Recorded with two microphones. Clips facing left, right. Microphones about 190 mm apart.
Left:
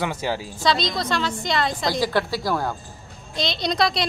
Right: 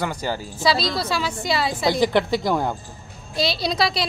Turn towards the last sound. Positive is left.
turn(degrees=-5)  # may be behind; listen again after turning